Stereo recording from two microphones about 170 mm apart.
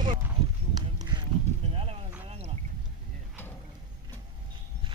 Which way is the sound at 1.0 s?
25° right (ahead or behind).